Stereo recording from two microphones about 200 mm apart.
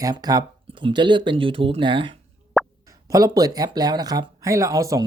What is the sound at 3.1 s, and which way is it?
Speech, 20° right (ahead or behind).